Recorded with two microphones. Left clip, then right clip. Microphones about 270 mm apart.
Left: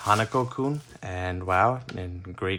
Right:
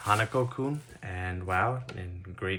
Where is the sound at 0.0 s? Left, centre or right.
Centre.